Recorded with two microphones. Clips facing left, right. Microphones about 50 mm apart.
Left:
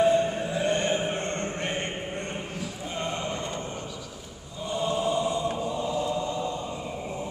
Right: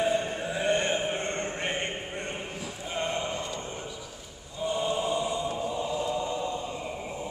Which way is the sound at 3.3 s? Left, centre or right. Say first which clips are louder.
Left 2 dB; left.